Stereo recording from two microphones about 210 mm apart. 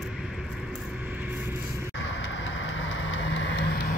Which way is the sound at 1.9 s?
65° left (ahead or behind).